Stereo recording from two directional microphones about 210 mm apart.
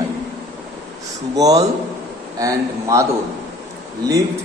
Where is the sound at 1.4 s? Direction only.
15° right (ahead or behind).